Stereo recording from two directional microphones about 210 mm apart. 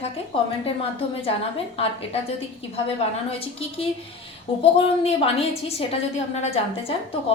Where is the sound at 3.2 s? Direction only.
25° left (ahead or behind).